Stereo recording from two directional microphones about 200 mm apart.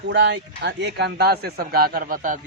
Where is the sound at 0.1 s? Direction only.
60° right (ahead or behind).